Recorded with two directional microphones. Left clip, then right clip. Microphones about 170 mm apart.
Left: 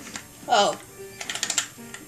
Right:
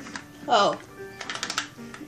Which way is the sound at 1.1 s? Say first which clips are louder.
Left 2 dB; 50° right (ahead or behind).